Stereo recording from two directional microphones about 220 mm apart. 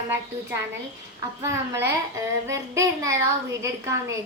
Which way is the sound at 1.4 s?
10° right (ahead or behind).